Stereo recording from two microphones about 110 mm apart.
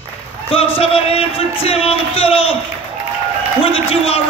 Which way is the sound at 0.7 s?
60° left (ahead or behind).